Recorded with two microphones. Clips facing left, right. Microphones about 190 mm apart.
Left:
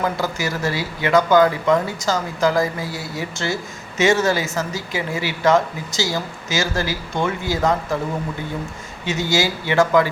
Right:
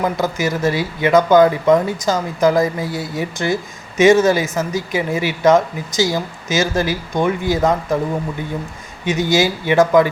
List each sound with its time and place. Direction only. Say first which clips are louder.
0.0 s speech: right 4 dB; 20° right (ahead or behind)
9.0 s speech: right 4 dB; 20° right (ahead or behind)